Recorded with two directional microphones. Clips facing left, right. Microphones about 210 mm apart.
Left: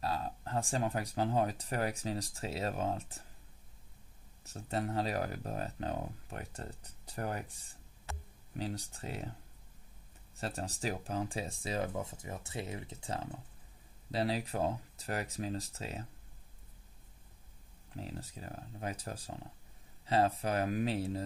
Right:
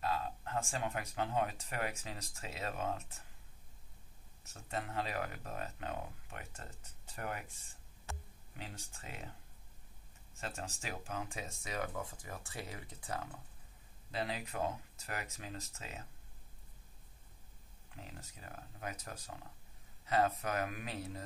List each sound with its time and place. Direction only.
0.0 s speech: 35° left (ahead or behind)
4.5 s speech: 35° left (ahead or behind)
10.4 s speech: 35° left (ahead or behind)
17.9 s speech: 35° left (ahead or behind)